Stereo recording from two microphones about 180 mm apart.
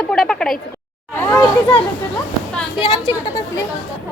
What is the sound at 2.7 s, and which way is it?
Speech, 20° left (ahead or behind).